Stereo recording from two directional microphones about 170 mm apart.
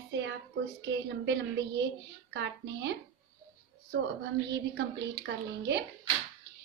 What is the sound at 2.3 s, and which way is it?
Speech, 90° right.